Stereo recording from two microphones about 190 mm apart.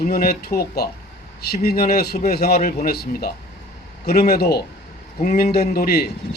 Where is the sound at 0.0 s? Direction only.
55° left (ahead or behind).